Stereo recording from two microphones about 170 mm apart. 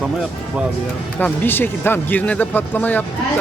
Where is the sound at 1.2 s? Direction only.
10° left (ahead or behind).